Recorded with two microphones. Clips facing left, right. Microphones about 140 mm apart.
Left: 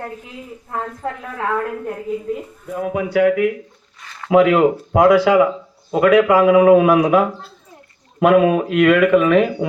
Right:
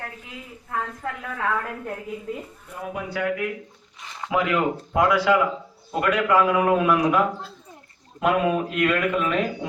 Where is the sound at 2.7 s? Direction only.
90° left.